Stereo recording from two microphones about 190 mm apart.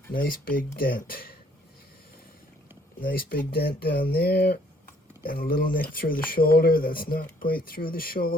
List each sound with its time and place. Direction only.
0.1 s speech: 50° left (ahead or behind)
3.0 s speech: 50° left (ahead or behind)